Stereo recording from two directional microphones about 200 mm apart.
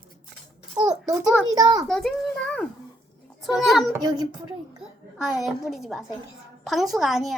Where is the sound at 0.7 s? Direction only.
5° right (ahead or behind).